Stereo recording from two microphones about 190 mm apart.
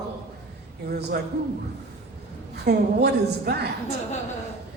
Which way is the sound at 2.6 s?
60° right (ahead or behind).